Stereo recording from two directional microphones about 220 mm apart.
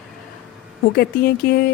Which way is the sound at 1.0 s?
45° left (ahead or behind).